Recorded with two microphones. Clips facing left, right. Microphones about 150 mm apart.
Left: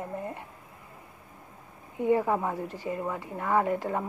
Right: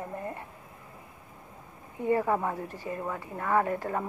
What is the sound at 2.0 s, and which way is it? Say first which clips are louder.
Speech: left 1 dB; 15° left (ahead or behind).